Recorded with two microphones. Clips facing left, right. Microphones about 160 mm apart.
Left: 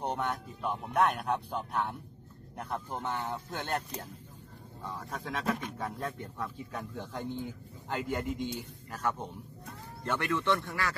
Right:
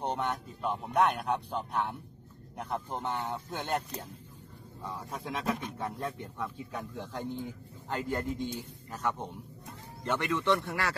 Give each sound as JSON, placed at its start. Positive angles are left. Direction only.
{"t": 0.0, "sound": "a man's voice", "side_deg": 5}
{"t": 9.2, "sound": "speech", "side_deg": -10}
{"t": 10.6, "sound": "speech", "side_deg": -25}